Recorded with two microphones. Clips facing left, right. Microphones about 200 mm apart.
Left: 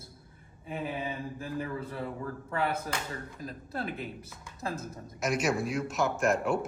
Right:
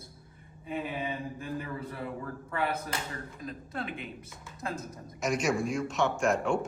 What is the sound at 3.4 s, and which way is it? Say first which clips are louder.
Speech: left 1 dB; 35° left (ahead or behind).